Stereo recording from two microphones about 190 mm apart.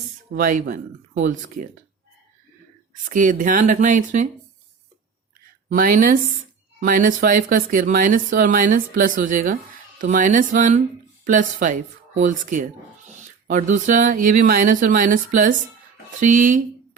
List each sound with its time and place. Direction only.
0.3 s speech: 45° right (ahead or behind)
2.9 s speech: 45° right (ahead or behind)
5.6 s speech: 50° right (ahead or behind)